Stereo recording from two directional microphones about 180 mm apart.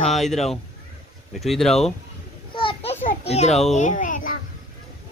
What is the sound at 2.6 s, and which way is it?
Children playing, 30° left (ahead or behind).